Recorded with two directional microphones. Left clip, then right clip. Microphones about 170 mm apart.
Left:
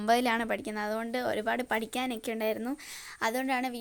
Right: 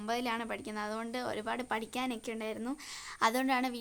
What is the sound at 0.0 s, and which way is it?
Speech, 30° left (ahead or behind).